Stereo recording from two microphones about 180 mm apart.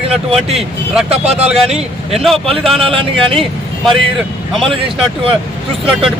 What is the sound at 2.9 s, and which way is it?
Speech, 30° right (ahead or behind).